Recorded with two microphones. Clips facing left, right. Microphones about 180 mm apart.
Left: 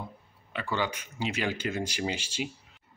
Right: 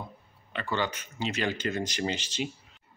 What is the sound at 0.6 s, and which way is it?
Speech, 10° left (ahead or behind).